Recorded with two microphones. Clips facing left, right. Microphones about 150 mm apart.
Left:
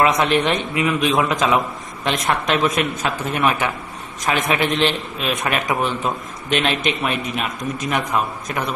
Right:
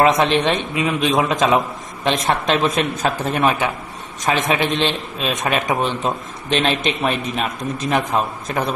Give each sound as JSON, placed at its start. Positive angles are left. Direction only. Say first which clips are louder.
{"t": 0.0, "sound": "a man's voice", "louder": "right 2 dB", "side_deg": -25}
{"t": 4.3, "sound": "a man's voice", "louder": "right 1 dB", "side_deg": -20}